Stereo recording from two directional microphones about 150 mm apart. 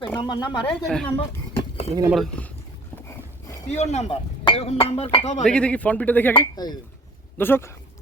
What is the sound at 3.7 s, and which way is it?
Speech, 45° left (ahead or behind).